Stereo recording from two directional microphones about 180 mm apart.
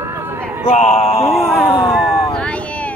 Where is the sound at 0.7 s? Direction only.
40° left (ahead or behind).